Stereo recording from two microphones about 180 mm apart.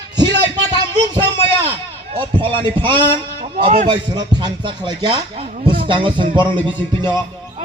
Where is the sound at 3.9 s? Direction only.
25° right (ahead or behind).